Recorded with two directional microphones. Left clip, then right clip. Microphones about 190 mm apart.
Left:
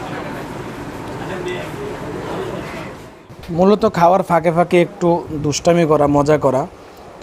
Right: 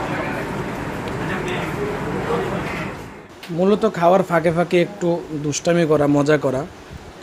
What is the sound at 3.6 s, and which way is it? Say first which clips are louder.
Speech: left 4 dB; 30° left (ahead or behind).